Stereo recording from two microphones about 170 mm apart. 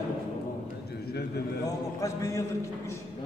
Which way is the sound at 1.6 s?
20° left (ahead or behind).